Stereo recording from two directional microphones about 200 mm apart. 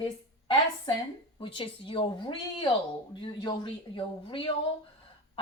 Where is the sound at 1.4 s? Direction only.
25° left (ahead or behind).